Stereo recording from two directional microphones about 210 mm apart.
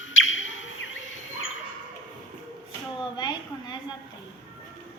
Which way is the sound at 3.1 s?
20° left (ahead or behind).